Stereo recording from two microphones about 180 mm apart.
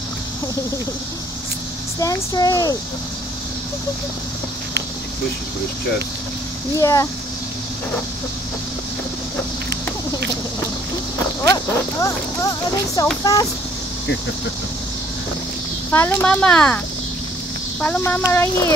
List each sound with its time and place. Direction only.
2.0 s speech: 20° left (ahead or behind)
6.8 s speech: 20° left (ahead or behind)
11.4 s speech: 20° left (ahead or behind)
15.9 s speech: 10° left (ahead or behind)